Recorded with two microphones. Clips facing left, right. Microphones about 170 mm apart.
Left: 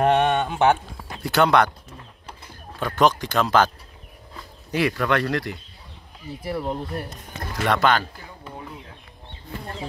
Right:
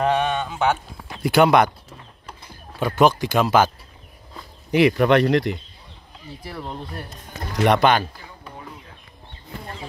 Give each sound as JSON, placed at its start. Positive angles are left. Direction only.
{"t": 0.0, "sound": "a sound", "side_deg": 60}
{"t": 1.2, "sound": "speech", "side_deg": -10}
{"t": 2.8, "sound": "speech", "side_deg": -10}
{"t": 6.5, "sound": "speech", "side_deg": 10}
{"t": 7.6, "sound": "speech", "side_deg": -20}